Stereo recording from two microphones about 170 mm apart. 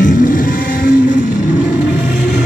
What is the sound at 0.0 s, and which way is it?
Vehicle, 55° left (ahead or behind).